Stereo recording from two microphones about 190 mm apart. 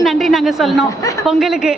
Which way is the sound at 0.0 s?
Centre (ahead or behind).